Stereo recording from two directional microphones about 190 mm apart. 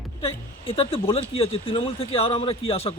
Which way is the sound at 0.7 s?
30° left (ahead or behind).